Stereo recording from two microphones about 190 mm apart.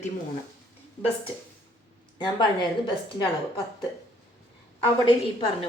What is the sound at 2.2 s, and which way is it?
Speech, 25° left (ahead or behind).